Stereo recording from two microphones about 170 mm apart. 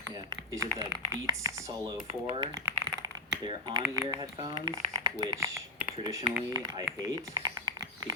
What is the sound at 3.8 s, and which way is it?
Speech, 15° right (ahead or behind).